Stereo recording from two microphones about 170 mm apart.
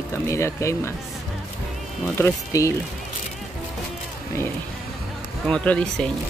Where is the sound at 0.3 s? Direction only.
15° left (ahead or behind).